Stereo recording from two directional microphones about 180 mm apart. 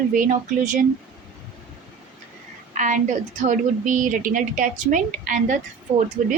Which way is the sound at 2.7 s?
45° right (ahead or behind).